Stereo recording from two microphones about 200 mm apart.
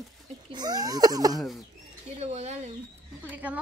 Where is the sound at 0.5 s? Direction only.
20° right (ahead or behind).